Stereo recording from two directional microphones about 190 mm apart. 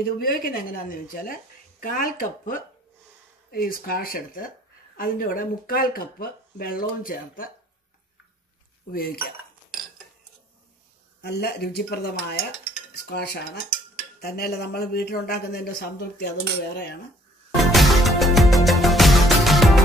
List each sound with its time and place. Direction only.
0.0 s a woman's voice: 50° left (ahead or behind)
8.9 s a woman's voice: 50° left (ahead or behind)
11.1 s speech: 60° left (ahead or behind)
17.6 s music: centre (ahead or behind)